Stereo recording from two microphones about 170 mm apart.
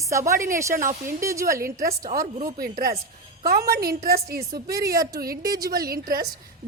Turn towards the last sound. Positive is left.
turn(degrees=-60)  # may be behind; listen again after turning